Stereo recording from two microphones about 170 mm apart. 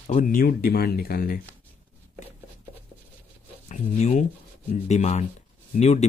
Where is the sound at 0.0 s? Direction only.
50° left (ahead or behind).